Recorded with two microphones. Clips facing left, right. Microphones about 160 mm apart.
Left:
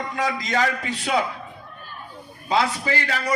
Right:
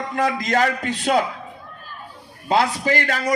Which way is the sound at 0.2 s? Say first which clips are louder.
Right 4 dB; 55° right (ahead or behind).